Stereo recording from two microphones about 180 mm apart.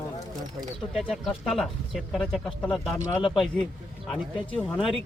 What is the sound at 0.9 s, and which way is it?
Speech, centre (ahead or behind).